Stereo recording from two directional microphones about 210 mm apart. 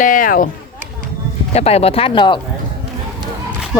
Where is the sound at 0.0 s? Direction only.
40° left (ahead or behind).